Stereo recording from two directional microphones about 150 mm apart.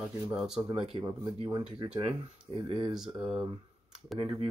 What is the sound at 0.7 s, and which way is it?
Speech, 35° right (ahead or behind).